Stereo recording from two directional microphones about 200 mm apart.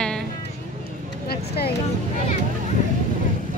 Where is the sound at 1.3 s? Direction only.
55° left (ahead or behind).